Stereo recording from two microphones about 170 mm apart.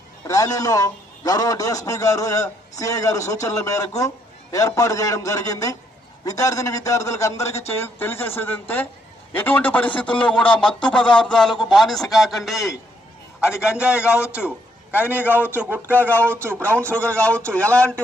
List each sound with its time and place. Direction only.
0.3 s a man's voice: 20° left (ahead or behind); by 14.3 s 5° right (ahead or behind)
15.4 s a man's voice: 10° left (ahead or behind)